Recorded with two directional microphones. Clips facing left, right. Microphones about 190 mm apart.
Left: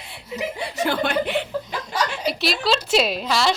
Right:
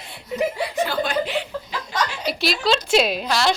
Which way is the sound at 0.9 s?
60° left (ahead or behind).